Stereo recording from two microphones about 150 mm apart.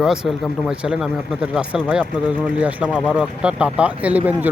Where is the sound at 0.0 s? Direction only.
5° right (ahead or behind).